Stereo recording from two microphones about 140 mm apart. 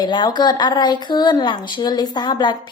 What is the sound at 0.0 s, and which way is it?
A woman's voice, 30° left (ahead or behind).